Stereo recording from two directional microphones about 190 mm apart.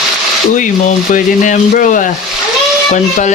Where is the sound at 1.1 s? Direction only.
45° left (ahead or behind).